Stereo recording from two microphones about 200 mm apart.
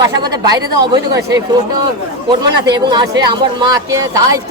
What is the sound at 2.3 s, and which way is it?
Speech, 20° right (ahead or behind).